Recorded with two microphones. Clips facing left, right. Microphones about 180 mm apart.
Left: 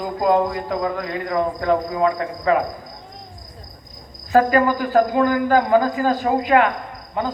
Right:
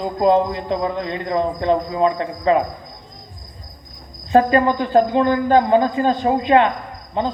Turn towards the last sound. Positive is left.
turn(degrees=-25)  # may be behind; listen again after turning